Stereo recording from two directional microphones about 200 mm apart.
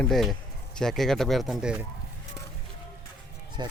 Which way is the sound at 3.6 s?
20° right (ahead or behind).